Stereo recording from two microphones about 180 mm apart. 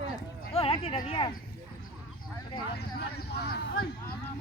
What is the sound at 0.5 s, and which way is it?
Speech, 35° left (ahead or behind).